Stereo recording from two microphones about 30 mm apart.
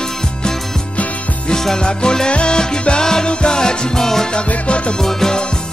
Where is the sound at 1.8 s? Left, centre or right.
Left.